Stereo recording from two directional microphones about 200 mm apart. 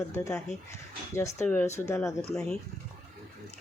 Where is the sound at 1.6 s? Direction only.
35° left (ahead or behind).